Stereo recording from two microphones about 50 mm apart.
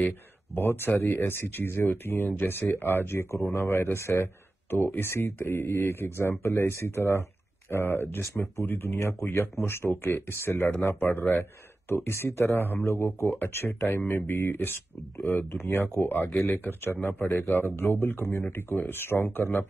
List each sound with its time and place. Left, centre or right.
0.6 s speech: left
3.2 s speech: left
11.9 s speech: left
12.5 s speech: left
13.7 s speech: left